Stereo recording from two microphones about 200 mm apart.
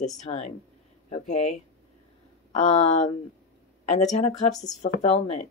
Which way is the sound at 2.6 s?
35° left (ahead or behind).